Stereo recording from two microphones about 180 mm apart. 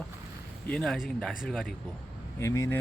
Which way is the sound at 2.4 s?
15° left (ahead or behind).